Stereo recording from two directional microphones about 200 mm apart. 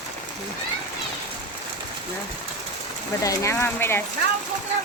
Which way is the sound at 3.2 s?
15° left (ahead or behind).